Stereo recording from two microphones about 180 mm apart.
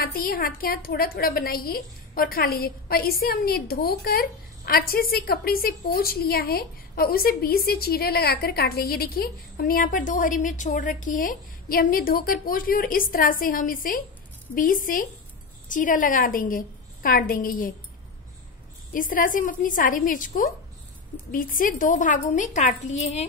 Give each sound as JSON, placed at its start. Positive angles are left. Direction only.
{"t": 0.0, "sound": "a woman's voice", "side_deg": 55}
{"t": 18.9, "sound": "a woman's voice", "side_deg": 50}